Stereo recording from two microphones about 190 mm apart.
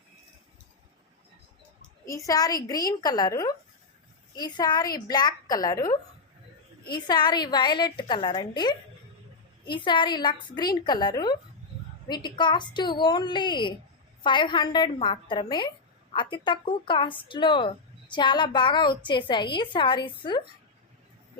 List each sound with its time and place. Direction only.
2.0 s speech: 15° left (ahead or behind)